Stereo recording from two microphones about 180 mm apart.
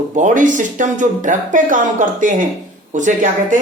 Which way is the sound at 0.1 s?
45° right (ahead or behind).